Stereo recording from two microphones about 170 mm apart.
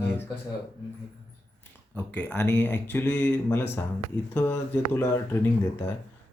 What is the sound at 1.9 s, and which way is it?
Speech, 5° left (ahead or behind).